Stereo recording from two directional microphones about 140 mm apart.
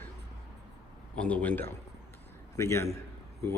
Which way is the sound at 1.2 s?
10° left (ahead or behind).